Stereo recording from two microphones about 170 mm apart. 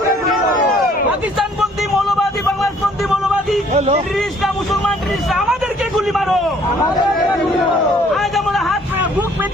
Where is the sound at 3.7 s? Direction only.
40° right (ahead or behind).